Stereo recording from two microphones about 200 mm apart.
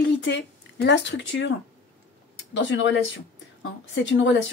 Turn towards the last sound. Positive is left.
turn(degrees=65)  # may be behind; listen again after turning